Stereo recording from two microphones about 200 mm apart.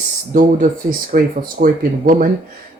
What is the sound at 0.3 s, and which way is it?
Speech, 45° right (ahead or behind).